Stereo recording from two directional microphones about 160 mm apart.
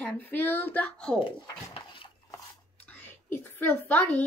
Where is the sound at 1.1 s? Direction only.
30° left (ahead or behind).